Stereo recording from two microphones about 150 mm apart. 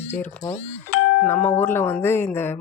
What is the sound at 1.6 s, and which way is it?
Speech, 15° left (ahead or behind).